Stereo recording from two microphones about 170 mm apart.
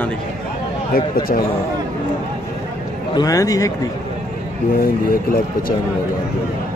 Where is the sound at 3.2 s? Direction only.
20° left (ahead or behind).